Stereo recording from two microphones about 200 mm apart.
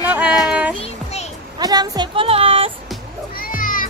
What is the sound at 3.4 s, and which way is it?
Music, 45° left (ahead or behind).